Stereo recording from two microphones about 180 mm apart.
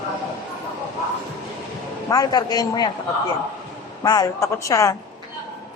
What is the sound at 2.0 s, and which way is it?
Speech, 20° left (ahead or behind).